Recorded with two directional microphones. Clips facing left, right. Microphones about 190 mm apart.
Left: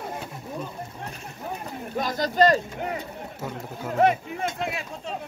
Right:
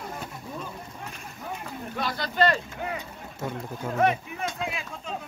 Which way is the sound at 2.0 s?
45° left (ahead or behind).